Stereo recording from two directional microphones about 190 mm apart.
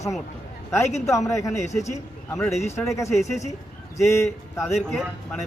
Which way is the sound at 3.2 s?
35° left (ahead or behind).